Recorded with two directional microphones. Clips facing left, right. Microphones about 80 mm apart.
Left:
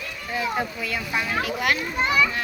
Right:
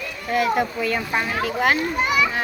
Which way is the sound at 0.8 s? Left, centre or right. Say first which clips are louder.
Right 4 dB; right.